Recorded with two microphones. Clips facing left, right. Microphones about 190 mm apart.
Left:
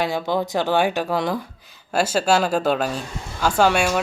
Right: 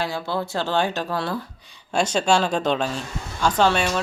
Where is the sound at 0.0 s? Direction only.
15° left (ahead or behind).